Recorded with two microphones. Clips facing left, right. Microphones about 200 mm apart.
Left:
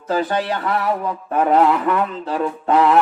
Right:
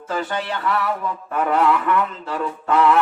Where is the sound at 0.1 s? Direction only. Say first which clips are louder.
Left 5 dB; 35° left (ahead or behind).